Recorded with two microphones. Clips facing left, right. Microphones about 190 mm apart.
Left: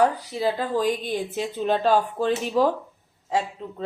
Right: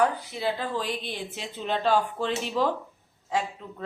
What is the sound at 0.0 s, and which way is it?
Speech, 40° left (ahead or behind).